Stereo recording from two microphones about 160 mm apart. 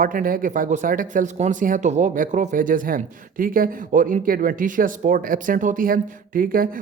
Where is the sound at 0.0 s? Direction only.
60° right (ahead or behind).